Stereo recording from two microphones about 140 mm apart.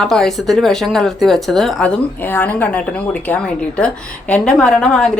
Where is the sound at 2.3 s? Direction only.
15° left (ahead or behind).